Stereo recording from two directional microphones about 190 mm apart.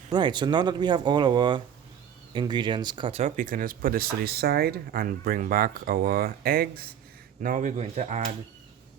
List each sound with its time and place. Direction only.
0.1 s speech: 25° right (ahead or behind)